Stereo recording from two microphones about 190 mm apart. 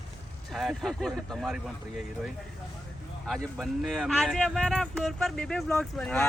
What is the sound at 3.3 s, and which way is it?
Speech, centre (ahead or behind).